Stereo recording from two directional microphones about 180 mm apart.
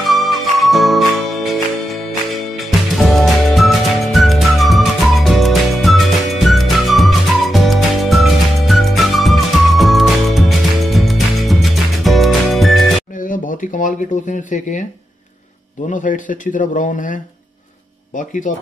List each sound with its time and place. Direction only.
0.0 s music: centre (ahead or behind)
13.1 s a sound: 50° left (ahead or behind)
15.9 s speech: 45° left (ahead or behind)